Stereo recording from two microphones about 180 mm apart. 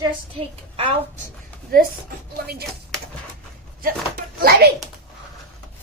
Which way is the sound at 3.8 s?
55° right (ahead or behind).